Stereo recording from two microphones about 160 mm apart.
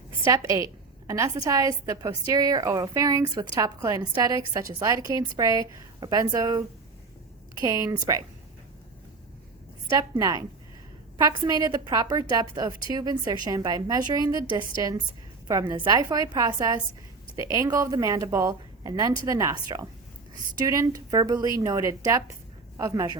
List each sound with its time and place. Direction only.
0.3 s a woman's voice: 20° right (ahead or behind)
10.0 s a woman's voice: 25° right (ahead or behind)